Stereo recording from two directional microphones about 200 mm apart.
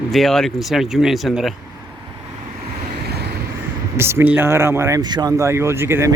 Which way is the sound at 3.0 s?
55° right (ahead or behind).